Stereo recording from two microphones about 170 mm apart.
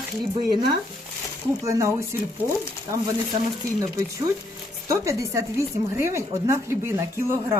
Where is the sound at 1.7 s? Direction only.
20° right (ahead or behind).